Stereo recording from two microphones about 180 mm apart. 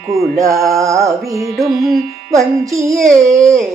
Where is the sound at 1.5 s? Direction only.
Centre (ahead or behind).